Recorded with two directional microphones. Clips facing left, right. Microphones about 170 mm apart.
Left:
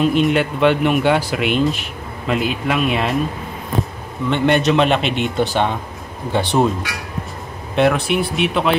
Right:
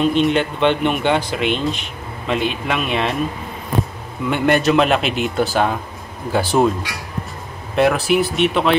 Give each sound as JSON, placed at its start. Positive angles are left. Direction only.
{"t": 0.0, "sound": "speech", "side_deg": 5}
{"t": 4.3, "sound": "speech", "side_deg": 0}
{"t": 7.7, "sound": "speech", "side_deg": 0}